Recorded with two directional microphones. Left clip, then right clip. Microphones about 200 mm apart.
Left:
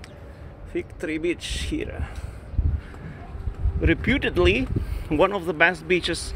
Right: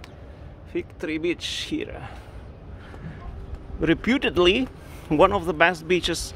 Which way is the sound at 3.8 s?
20° right (ahead or behind).